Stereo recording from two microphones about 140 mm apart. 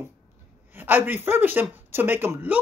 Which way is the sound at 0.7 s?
15° right (ahead or behind).